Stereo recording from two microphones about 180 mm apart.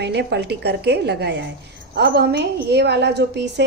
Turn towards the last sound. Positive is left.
turn(degrees=-70)  # may be behind; listen again after turning